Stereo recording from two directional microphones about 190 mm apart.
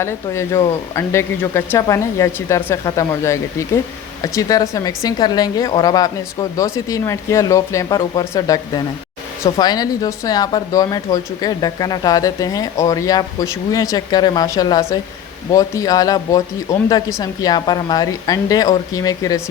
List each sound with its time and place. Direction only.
0.0 s speech: 15° left (ahead or behind)